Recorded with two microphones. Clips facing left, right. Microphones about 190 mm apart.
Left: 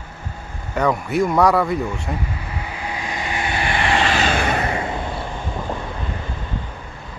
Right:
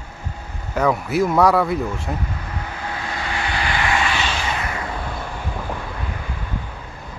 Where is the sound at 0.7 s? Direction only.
Centre (ahead or behind); by 4.6 s 50° left (ahead or behind).